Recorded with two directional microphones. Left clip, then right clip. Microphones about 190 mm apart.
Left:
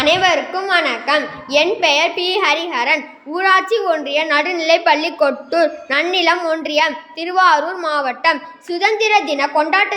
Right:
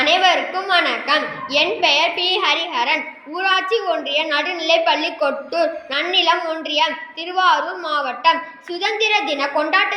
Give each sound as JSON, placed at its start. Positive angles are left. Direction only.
{"t": 0.0, "sound": "a woman's voice", "side_deg": 55}